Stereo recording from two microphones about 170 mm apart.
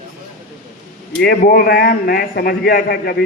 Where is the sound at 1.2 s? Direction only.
65° left (ahead or behind).